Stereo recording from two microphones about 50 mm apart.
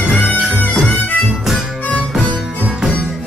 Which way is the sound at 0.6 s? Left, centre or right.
Left.